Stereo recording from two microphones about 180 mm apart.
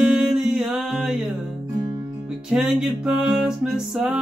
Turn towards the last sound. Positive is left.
turn(degrees=-5)  # may be behind; listen again after turning